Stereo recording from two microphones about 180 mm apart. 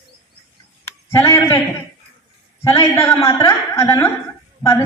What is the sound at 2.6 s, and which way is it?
A woman's voice, 15° left (ahead or behind).